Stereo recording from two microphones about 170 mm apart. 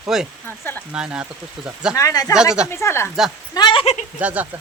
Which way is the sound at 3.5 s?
25° left (ahead or behind).